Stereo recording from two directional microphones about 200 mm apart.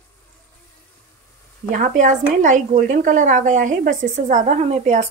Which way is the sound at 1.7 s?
40° right (ahead or behind).